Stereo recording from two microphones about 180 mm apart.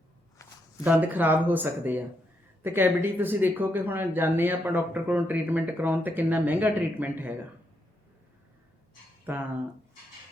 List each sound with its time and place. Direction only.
0.9 s speech: 10° right (ahead or behind)
9.3 s speech: 10° right (ahead or behind)